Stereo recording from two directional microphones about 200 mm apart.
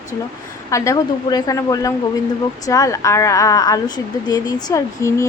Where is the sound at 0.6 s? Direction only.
15° left (ahead or behind).